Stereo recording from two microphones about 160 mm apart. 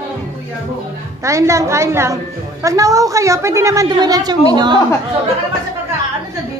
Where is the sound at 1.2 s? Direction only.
20° right (ahead or behind).